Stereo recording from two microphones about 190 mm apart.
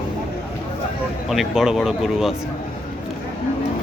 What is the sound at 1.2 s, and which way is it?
Speech, centre (ahead or behind).